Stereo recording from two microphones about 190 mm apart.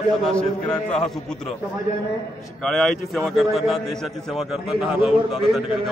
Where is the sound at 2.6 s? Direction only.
Centre (ahead or behind).